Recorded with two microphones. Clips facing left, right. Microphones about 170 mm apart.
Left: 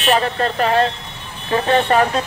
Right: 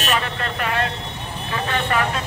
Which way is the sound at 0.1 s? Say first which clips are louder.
Left 9 dB; 35° left (ahead or behind).